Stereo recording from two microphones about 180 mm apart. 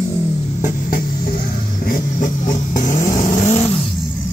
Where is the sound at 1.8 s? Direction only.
50° left (ahead or behind).